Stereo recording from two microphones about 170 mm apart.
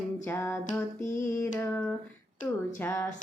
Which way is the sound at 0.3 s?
15° left (ahead or behind).